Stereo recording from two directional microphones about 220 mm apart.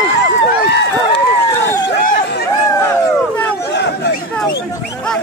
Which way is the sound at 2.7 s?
15° left (ahead or behind).